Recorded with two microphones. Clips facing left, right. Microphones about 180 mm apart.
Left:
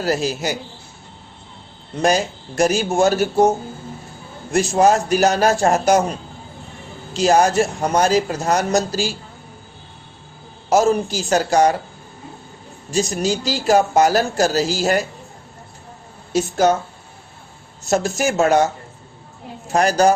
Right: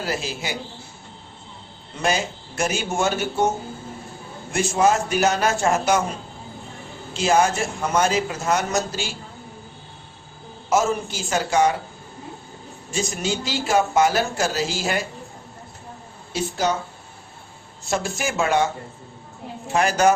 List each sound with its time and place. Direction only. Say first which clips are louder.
0.0 s speech: left 7 dB; 40° left (ahead or behind)
2.0 s speech: left 6 dB; 40° left (ahead or behind)
4.5 s speech: left 4 dB; 40° left (ahead or behind)
7.1 s speech: left 4 dB; 40° left (ahead or behind)
10.7 s speech: left 5 dB; 35° left (ahead or behind)
12.9 s speech: left 6 dB; 35° left (ahead or behind)
16.3 s speech: left 7 dB; 50° left (ahead or behind)
17.8 s speech: left 6 dB; 40° left (ahead or behind)